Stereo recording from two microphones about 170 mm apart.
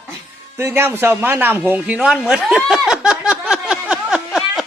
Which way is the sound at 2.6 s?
Centre (ahead or behind).